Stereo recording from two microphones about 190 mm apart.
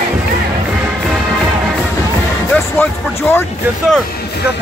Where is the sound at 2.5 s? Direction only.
10° left (ahead or behind).